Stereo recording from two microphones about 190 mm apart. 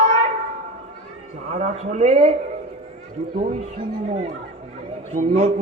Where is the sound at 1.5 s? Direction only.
40° right (ahead or behind).